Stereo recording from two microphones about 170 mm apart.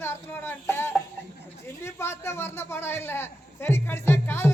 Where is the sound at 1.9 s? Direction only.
15° left (ahead or behind).